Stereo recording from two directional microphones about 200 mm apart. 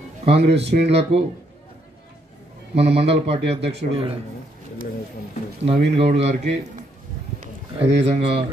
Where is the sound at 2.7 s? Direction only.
30° right (ahead or behind).